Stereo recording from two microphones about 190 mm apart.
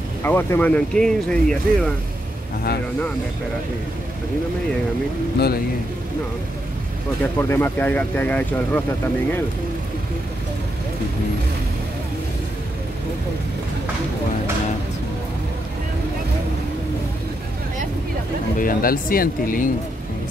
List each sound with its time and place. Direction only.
0.2 s speech: 10° left (ahead or behind)
7.3 s speech: 10° left (ahead or behind)
18.6 s speech: 50° left (ahead or behind)